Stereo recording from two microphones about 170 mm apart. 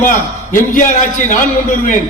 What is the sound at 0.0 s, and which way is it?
A man's voice, 50° left (ahead or behind).